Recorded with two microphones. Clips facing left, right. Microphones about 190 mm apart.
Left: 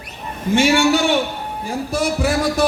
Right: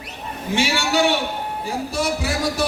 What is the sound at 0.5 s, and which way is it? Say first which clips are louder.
Speech: left 6 dB; 50° left (ahead or behind).